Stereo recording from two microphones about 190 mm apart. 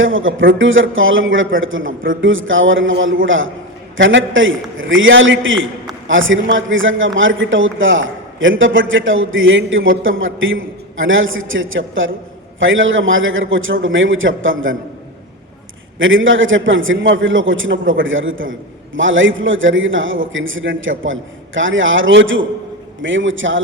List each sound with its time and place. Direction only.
0.0 s a man's voice: 90° right
16.0 s a man's voice: 90° right